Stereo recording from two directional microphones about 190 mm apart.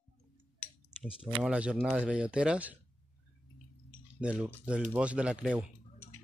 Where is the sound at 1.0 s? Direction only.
5° right (ahead or behind).